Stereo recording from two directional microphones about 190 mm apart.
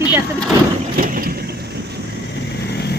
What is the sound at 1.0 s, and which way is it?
Vehicle, 50° right (ahead or behind).